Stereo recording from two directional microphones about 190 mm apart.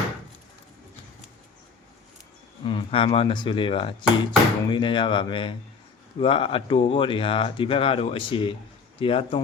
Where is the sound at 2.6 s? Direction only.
25° left (ahead or behind).